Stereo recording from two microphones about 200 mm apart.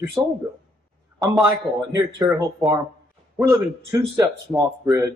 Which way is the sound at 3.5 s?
15° right (ahead or behind).